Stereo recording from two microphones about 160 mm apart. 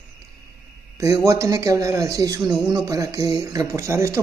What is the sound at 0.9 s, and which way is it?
Speech, 20° right (ahead or behind).